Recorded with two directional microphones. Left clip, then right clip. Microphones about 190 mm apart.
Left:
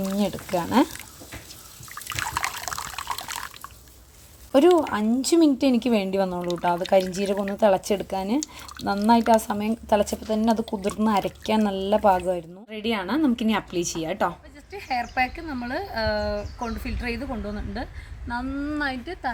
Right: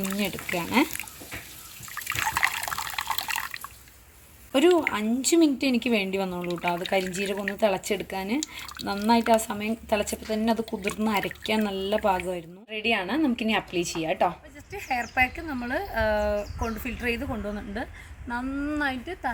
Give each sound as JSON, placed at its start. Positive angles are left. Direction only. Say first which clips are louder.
{"t": 0.2, "sound": "speech", "louder": "left 4 dB", "side_deg": 35}
{"t": 2.0, "sound": "liquid", "louder": "right 2 dB", "side_deg": 10}
{"t": 4.5, "sound": "speech", "louder": "left 3 dB", "side_deg": 30}
{"t": 14.7, "sound": "speech", "louder": "left 1 dB", "side_deg": 0}